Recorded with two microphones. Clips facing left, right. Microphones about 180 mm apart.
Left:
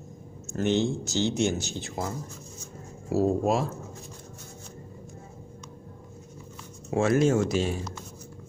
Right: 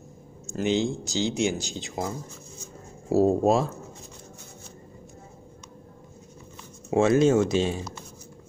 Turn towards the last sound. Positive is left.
turn(degrees=-25)  # may be behind; listen again after turning